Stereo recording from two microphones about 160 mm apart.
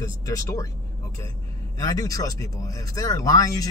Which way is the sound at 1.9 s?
20° left (ahead or behind).